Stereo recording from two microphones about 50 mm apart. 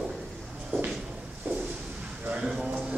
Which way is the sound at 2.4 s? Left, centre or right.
Centre.